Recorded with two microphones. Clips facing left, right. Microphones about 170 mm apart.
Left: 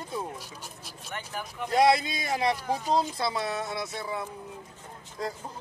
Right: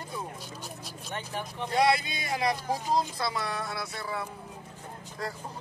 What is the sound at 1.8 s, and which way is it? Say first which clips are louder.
Speech: left 4 dB; 25° left (ahead or behind).